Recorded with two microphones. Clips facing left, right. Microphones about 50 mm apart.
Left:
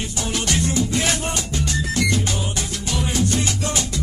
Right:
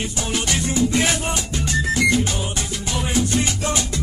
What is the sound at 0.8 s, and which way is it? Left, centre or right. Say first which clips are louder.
Music: right 3 dB; right.